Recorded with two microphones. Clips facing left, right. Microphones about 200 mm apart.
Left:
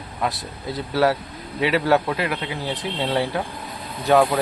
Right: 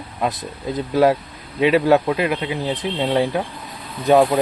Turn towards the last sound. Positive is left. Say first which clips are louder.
# right 3 dB
turn(degrees=-20)  # may be behind; listen again after turning